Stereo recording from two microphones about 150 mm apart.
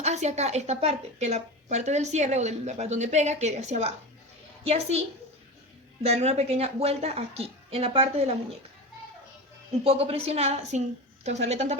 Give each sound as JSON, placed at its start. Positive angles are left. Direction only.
{"t": 0.0, "sound": "a woman's voice", "side_deg": -45}
{"t": 9.8, "sound": "a woman's voice", "side_deg": -40}